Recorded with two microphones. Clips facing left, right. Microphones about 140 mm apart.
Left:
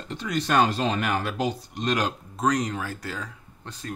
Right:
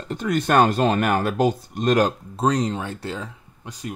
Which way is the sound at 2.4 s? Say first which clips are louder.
Right 3 dB; 30° right (ahead or behind).